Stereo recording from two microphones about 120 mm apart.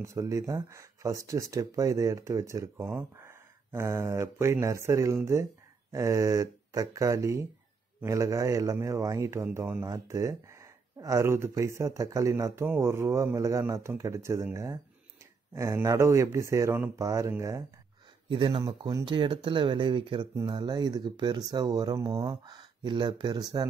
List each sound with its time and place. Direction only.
0.0 s speech: 25° right (ahead or behind)
18.3 s speech: 45° right (ahead or behind)